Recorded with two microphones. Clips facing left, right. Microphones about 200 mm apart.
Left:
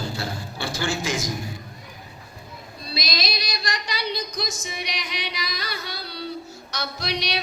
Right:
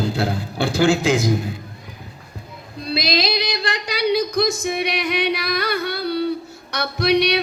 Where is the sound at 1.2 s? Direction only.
55° right (ahead or behind).